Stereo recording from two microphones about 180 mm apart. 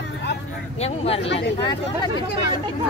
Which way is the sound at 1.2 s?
80° left.